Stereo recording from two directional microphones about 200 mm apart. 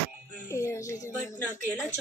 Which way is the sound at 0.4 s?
15° left (ahead or behind).